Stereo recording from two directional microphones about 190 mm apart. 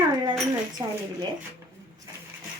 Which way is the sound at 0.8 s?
20° right (ahead or behind).